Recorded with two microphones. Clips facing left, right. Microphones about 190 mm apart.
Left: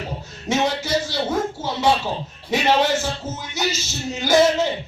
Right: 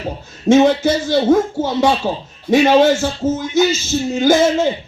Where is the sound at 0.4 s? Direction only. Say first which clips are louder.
Right 11 dB; 50° right (ahead or behind).